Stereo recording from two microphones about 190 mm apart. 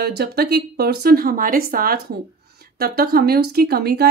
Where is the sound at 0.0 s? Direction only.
60° right (ahead or behind).